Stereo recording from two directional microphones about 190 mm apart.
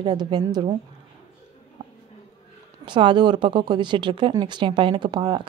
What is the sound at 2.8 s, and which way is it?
A woman's voice, 25° right (ahead or behind).